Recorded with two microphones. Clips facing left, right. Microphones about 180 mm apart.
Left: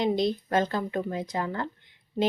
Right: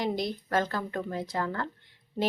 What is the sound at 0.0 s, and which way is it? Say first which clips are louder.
Speech: left 5 dB; 20° left (ahead or behind).